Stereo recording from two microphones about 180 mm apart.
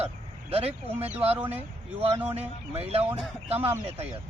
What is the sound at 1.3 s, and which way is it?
Speech, 10° right (ahead or behind).